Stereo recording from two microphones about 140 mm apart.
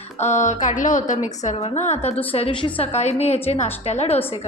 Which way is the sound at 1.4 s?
50° left (ahead or behind).